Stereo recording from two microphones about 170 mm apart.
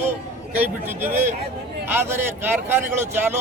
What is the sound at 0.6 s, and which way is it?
A man's voice, 10° right (ahead or behind).